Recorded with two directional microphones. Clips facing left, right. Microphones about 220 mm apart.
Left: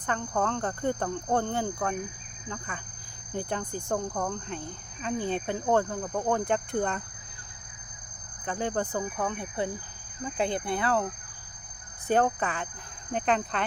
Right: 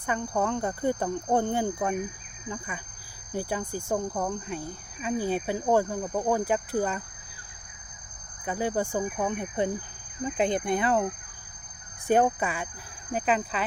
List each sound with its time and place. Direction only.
0.0 s speech: 10° right (ahead or behind)
8.4 s speech: 10° right (ahead or behind)